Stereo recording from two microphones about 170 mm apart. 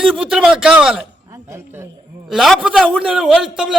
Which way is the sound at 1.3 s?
15° right (ahead or behind).